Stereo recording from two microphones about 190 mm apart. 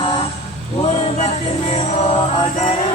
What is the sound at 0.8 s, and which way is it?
Music, 30° left (ahead or behind).